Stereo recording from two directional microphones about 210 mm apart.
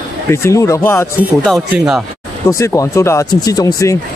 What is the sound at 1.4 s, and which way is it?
Speech, centre (ahead or behind).